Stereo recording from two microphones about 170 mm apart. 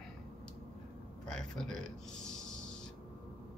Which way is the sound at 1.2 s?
5° left (ahead or behind).